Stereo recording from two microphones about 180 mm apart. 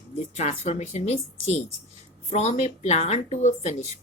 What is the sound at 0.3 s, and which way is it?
Speech, 40° left (ahead or behind).